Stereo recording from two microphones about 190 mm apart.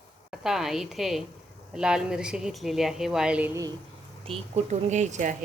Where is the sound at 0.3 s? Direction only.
Centre (ahead or behind).